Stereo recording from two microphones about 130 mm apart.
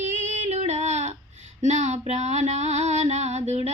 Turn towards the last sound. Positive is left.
turn(degrees=-60)  # may be behind; listen again after turning